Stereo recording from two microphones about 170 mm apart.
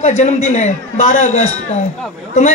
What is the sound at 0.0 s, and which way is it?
A woman's voice, 45° left (ahead or behind).